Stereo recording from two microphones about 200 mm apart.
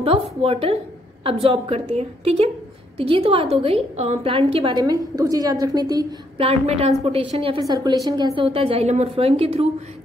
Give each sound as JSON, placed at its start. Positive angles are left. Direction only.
{"t": 0.0, "sound": "a woman's voice", "side_deg": -30}